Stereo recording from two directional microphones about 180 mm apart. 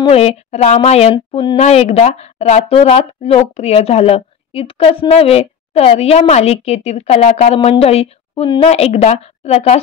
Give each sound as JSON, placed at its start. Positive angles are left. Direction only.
{"t": 0.0, "sound": "a woman's voice", "side_deg": 35}
{"t": 1.6, "sound": "a woman's voice", "side_deg": 35}